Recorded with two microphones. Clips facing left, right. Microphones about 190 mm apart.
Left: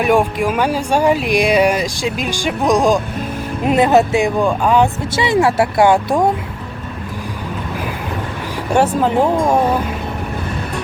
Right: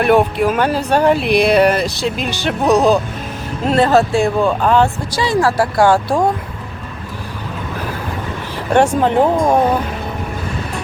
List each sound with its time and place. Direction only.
0.0 s speech: 10° left (ahead or behind)
8.7 s speech: 5° left (ahead or behind)